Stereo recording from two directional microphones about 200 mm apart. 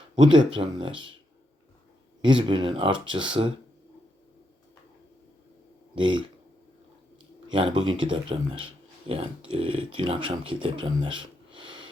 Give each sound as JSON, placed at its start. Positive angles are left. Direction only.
{"t": 0.2, "sound": "speech", "side_deg": -25}
{"t": 2.2, "sound": "speech", "side_deg": -25}
{"t": 5.9, "sound": "speech", "side_deg": -25}
{"t": 7.5, "sound": "speech", "side_deg": -25}